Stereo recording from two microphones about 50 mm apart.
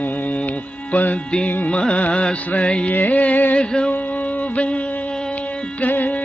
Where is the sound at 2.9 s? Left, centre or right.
Left.